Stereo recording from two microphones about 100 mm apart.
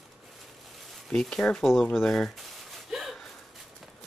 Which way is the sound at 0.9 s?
5° left (ahead or behind).